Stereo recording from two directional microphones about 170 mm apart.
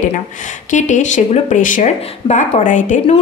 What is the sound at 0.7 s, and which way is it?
A woman's voice, 45° left (ahead or behind).